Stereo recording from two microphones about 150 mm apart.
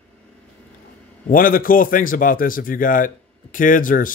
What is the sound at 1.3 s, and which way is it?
A man's voice, 70° left (ahead or behind).